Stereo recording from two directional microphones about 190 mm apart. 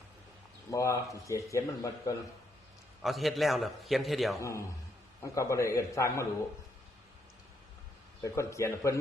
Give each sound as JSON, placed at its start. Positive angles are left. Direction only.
{"t": 0.7, "sound": "speech", "side_deg": 15}
{"t": 3.0, "sound": "a man's voice", "side_deg": 0}
{"t": 4.4, "sound": "speech", "side_deg": 15}
{"t": 8.2, "sound": "speech", "side_deg": 15}